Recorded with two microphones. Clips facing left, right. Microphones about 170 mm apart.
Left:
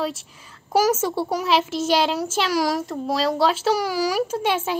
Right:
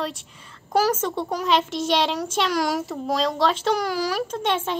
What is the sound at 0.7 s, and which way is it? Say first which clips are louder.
A child's voice: left 2 dB; 10° left (ahead or behind).